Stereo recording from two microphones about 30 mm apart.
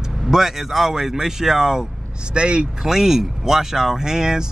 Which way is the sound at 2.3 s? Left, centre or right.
Right.